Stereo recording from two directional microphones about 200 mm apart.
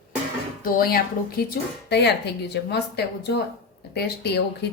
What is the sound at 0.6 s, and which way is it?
A woman's voice, 50° left (ahead or behind).